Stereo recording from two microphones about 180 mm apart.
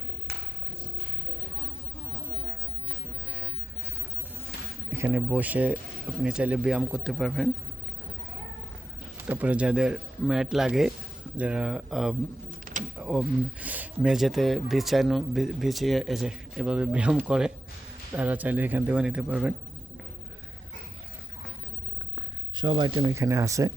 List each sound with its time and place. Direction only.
4.9 s speech: 10° right (ahead or behind)
9.2 s speech: 10° right (ahead or behind)
12.7 s a sound: 50° right (ahead or behind)
13.0 s speech: 5° right (ahead or behind)
22.5 s speech: 25° right (ahead or behind)